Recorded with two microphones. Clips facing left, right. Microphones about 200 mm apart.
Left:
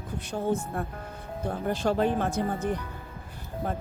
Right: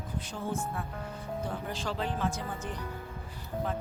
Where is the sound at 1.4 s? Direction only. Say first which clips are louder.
Left 11 dB; 60° left (ahead or behind).